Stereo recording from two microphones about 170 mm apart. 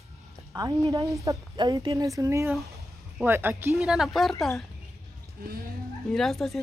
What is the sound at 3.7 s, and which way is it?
Speech, centre (ahead or behind).